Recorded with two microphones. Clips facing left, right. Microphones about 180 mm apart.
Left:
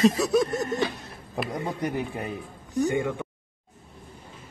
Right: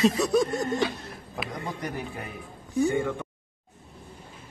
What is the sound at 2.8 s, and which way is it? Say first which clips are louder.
Speech: even; 15° left (ahead or behind).